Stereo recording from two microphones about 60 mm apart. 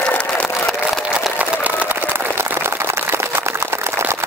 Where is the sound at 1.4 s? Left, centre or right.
Right.